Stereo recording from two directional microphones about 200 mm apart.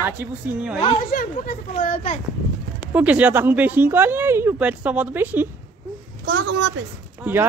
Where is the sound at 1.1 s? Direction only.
45° left (ahead or behind).